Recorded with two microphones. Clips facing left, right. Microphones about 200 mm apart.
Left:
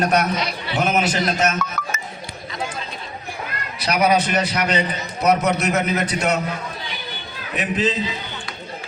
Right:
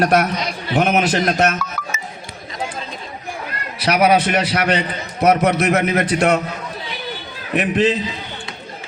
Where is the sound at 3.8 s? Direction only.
65° right (ahead or behind).